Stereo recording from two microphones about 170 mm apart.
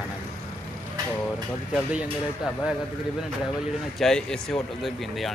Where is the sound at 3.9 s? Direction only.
5° left (ahead or behind).